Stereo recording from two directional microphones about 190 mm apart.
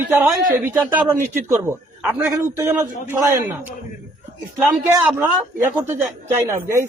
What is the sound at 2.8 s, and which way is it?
Speech, 15° right (ahead or behind).